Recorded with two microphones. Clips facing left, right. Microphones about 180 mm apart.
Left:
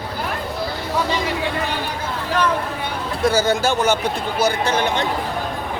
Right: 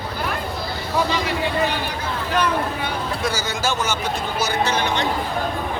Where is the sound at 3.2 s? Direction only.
55° left (ahead or behind).